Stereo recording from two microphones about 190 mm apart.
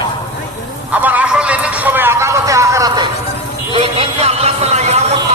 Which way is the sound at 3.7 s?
30° right (ahead or behind).